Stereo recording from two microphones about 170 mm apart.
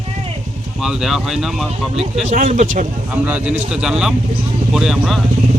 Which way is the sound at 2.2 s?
45° right (ahead or behind).